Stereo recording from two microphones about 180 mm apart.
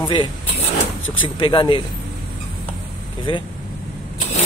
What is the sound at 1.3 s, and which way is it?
Speech, 25° left (ahead or behind).